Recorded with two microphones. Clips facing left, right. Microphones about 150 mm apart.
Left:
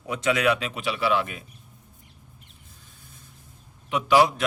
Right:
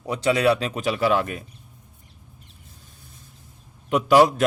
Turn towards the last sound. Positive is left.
turn(degrees=-45)  # may be behind; listen again after turning